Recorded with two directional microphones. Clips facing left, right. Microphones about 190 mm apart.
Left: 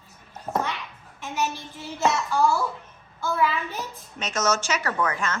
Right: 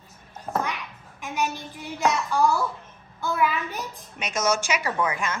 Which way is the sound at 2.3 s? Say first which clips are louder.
Even; centre (ahead or behind).